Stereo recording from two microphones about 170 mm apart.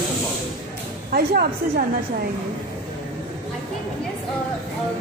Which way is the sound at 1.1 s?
55° right (ahead or behind).